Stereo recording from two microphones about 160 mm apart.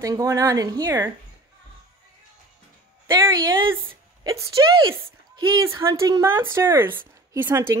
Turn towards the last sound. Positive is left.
turn(degrees=-15)  # may be behind; listen again after turning